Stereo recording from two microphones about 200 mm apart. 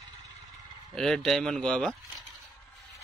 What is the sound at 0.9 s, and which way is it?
A man's voice, centre (ahead or behind).